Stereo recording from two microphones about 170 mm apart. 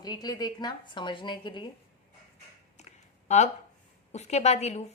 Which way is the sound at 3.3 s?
45° left (ahead or behind).